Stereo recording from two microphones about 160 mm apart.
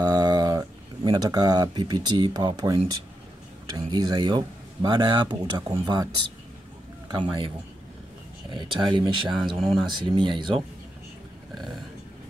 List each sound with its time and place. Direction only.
0.0 s speech: 25° right (ahead or behind)
7.1 s speech: 30° right (ahead or behind)
8.5 s speech: 30° right (ahead or behind)
11.5 s vehicle: centre (ahead or behind)